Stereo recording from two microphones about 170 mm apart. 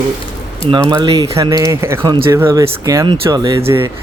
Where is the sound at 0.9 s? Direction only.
20° right (ahead or behind).